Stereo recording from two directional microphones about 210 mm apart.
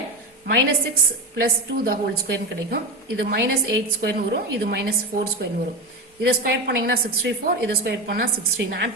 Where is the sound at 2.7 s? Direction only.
50° right (ahead or behind).